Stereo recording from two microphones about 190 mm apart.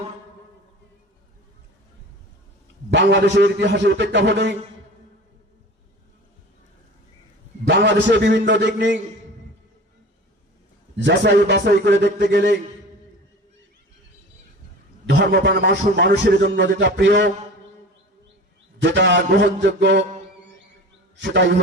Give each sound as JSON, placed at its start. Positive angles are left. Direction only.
{"t": 2.9, "sound": "a man's voice", "side_deg": -70}
{"t": 7.7, "sound": "a man's voice", "side_deg": -65}
{"t": 10.9, "sound": "a man's voice", "side_deg": -65}
{"t": 15.0, "sound": "a man's voice", "side_deg": -65}
{"t": 18.8, "sound": "a man's voice", "side_deg": -70}
{"t": 21.2, "sound": "a man's voice", "side_deg": -70}